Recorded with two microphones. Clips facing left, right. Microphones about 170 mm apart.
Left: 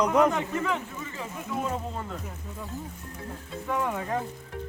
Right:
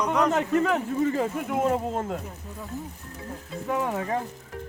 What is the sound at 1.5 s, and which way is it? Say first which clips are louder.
Speech: right 3 dB; 65° right (ahead or behind).